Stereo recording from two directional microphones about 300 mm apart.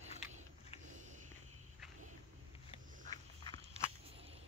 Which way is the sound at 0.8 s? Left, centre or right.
Right.